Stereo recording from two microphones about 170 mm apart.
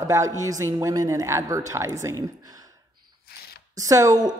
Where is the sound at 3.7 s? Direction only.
20° right (ahead or behind).